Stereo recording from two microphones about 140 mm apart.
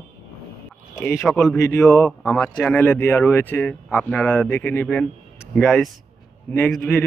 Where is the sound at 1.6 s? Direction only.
20° left (ahead or behind).